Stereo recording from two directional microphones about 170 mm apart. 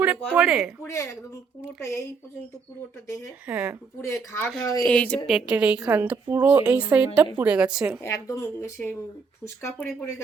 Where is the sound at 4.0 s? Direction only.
15° left (ahead or behind).